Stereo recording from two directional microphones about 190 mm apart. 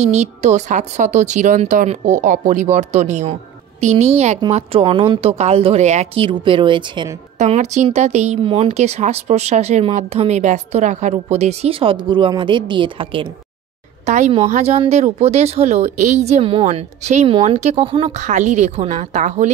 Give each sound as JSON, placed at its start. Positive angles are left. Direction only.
{"t": 0.0, "sound": "a woman's voice", "side_deg": -35}
{"t": 7.3, "sound": "a woman's voice", "side_deg": -40}